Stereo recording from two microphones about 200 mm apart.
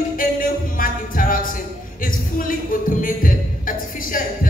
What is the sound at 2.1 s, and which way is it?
Music, 45° left (ahead or behind).